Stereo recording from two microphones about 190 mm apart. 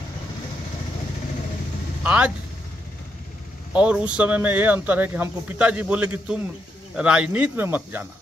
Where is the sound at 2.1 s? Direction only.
5° right (ahead or behind).